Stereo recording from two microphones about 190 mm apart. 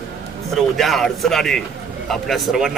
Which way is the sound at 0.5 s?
Centre (ahead or behind).